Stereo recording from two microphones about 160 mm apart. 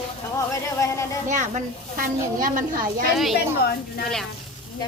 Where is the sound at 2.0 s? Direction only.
60° right (ahead or behind).